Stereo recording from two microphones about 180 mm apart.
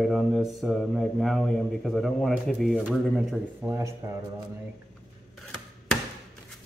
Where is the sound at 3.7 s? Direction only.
15° right (ahead or behind).